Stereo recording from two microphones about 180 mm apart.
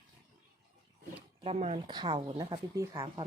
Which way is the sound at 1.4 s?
35° right (ahead or behind).